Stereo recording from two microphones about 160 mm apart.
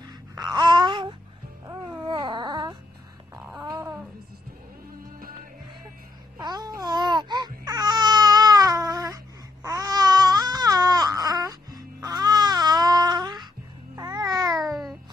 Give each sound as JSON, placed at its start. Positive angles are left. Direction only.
{"t": 0.4, "sound": "babbling", "side_deg": -25}
{"t": 1.7, "sound": "a sound", "side_deg": -30}
{"t": 6.4, "sound": "baby cry", "side_deg": -25}
{"t": 13.9, "sound": "babbling", "side_deg": -25}
{"t": 14.6, "sound": "babbling", "side_deg": 0}